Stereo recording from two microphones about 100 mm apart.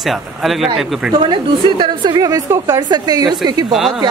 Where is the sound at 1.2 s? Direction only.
55° right (ahead or behind).